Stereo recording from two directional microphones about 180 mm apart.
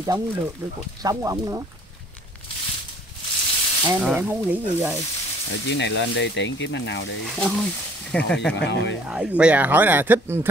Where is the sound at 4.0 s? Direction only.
Centre (ahead or behind).